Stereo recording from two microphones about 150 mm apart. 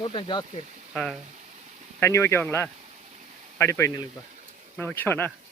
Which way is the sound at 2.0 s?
20° left (ahead or behind).